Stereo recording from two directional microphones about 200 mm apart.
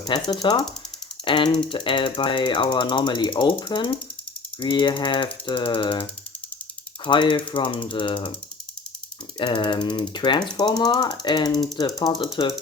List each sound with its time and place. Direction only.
0.0 s speech: 20° left (ahead or behind)
9.4 s speech: 25° left (ahead or behind)